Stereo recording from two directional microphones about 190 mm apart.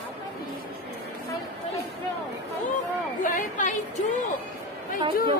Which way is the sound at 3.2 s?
40° left (ahead or behind).